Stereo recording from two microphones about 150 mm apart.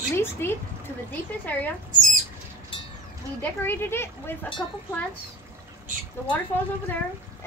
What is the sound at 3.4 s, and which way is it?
A child's voice, 15° left (ahead or behind).